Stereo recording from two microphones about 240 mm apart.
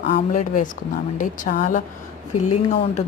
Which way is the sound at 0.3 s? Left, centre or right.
Left.